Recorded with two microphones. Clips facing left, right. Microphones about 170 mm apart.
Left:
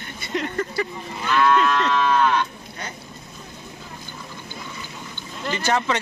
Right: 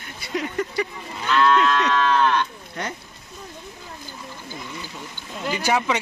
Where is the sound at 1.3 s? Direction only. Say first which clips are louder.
Even; 10° left (ahead or behind).